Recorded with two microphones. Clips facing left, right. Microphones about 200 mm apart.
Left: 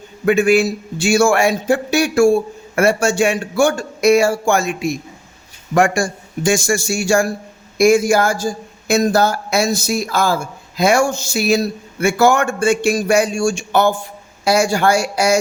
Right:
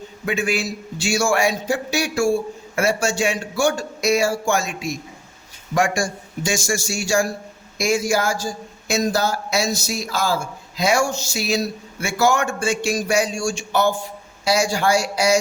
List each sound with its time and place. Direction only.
0.3 s a man's voice: 55° left (ahead or behind)